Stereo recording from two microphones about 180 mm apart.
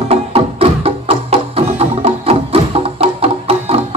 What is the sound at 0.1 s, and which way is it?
Music, 35° right (ahead or behind).